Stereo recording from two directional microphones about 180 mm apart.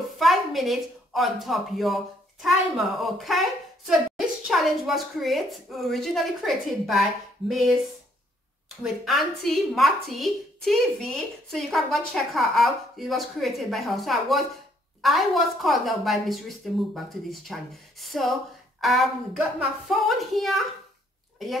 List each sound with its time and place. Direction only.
0.2 s a woman's voice: centre (ahead or behind)
8.8 s a woman's voice: centre (ahead or behind)